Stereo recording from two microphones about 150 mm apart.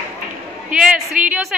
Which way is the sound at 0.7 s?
5° right (ahead or behind).